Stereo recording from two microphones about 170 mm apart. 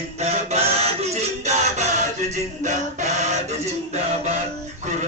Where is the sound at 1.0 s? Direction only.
40° right (ahead or behind).